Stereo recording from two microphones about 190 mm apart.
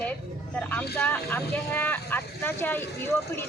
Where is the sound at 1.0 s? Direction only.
10° left (ahead or behind).